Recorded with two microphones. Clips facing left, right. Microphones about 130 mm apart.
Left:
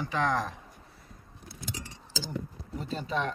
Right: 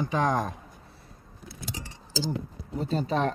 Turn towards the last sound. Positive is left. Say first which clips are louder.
# right 5 dB
turn(degrees=-40)  # may be behind; listen again after turning